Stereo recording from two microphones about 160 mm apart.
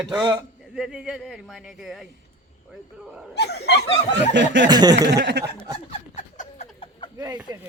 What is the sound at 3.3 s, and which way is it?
Speech, 90° left.